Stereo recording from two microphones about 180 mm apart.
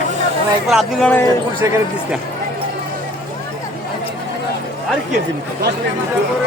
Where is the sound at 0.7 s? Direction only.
5° left (ahead or behind).